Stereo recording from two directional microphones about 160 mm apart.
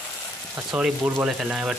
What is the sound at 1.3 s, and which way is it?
Frying, 5° right (ahead or behind).